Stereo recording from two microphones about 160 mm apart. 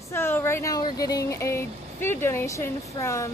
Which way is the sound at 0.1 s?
15° left (ahead or behind).